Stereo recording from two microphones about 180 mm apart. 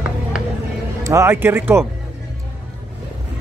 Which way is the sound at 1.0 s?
15° right (ahead or behind).